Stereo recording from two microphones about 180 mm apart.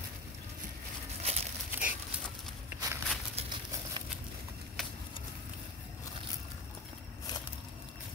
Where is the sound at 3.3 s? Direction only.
30° right (ahead or behind).